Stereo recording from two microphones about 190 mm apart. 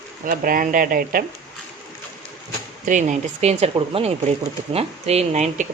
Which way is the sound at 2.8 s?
40° right (ahead or behind).